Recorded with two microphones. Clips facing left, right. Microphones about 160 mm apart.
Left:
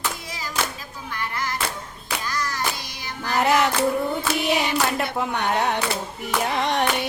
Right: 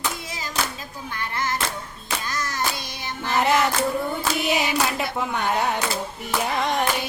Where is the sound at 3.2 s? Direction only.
Centre (ahead or behind).